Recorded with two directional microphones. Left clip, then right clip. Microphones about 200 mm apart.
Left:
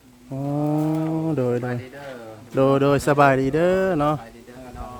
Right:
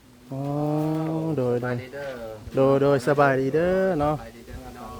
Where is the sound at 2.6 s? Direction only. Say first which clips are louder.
Left 1 dB; 20° left (ahead or behind).